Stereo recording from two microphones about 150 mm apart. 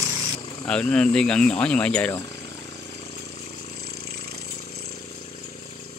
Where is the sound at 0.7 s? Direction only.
5° left (ahead or behind).